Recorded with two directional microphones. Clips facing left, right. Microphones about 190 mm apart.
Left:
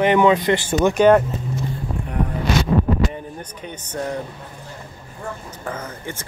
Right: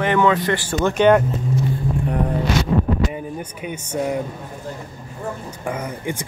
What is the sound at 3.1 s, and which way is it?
Speech, 10° right (ahead or behind).